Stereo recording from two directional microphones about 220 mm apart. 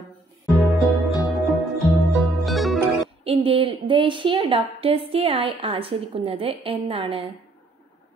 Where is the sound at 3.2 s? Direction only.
25° right (ahead or behind).